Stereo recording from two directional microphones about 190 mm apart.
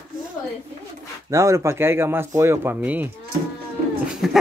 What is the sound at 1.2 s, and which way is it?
Speech, 15° right (ahead or behind).